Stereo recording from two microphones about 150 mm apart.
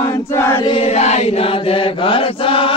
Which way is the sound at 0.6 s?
40° left (ahead or behind).